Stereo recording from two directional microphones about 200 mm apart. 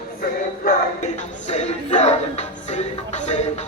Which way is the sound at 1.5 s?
35° left (ahead or behind).